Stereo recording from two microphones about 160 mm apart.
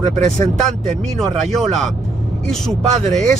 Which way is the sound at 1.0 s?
Centre (ahead or behind).